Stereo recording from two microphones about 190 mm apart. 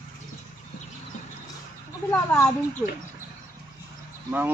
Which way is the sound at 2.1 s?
10° left (ahead or behind).